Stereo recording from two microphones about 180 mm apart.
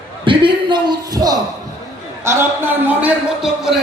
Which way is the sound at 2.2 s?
10° right (ahead or behind).